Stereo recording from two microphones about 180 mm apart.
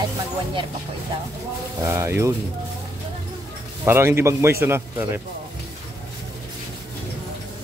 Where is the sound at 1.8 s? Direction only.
15° right (ahead or behind).